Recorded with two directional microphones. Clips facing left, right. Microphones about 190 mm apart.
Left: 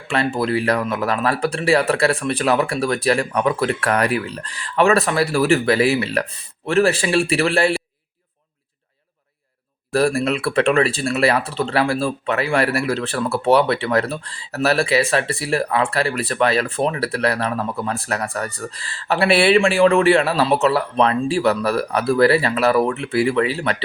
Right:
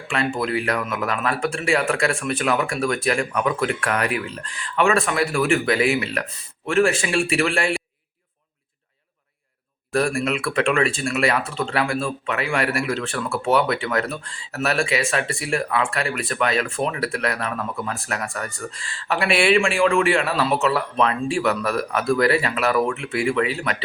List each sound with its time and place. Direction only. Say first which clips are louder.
0.1 s speech: left 3 dB; 35° left (ahead or behind)
9.9 s speech: left 3 dB; 35° left (ahead or behind)